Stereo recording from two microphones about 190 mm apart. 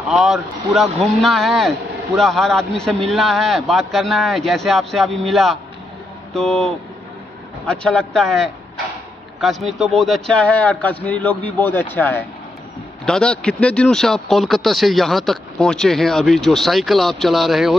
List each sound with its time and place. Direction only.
0.1 s a man's voice: centre (ahead or behind)